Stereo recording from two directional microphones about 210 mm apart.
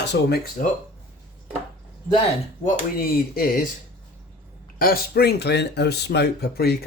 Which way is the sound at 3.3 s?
45° left (ahead or behind).